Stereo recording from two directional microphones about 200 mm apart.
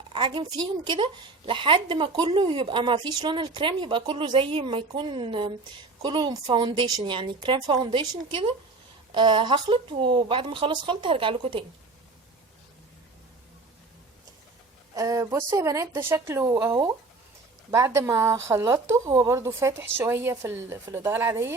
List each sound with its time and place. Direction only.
0.1 s a sound: 25° right (ahead or behind)
0.9 s speech: 25° right (ahead or behind)
14.9 s speech: 15° right (ahead or behind)